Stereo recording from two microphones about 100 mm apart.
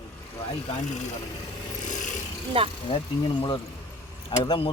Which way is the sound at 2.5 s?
65° right (ahead or behind).